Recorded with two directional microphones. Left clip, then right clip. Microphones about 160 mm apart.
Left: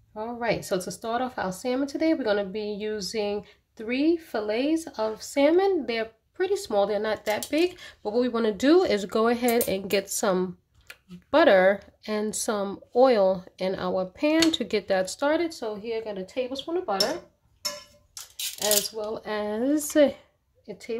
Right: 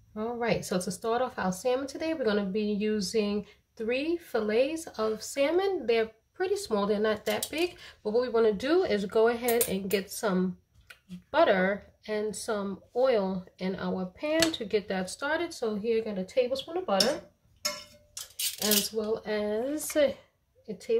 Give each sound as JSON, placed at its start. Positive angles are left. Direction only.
{"t": 0.1, "sound": "speech", "side_deg": 35}
{"t": 19.1, "sound": "speech", "side_deg": 45}